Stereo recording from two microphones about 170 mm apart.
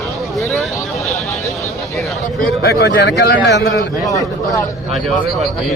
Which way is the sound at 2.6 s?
75° left (ahead or behind).